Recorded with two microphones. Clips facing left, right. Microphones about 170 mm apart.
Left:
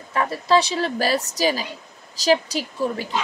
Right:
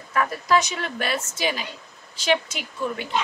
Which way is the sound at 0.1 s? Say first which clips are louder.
Left 2 dB; 30° left (ahead or behind).